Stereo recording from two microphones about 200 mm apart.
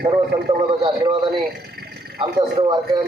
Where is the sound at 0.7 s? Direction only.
25° right (ahead or behind).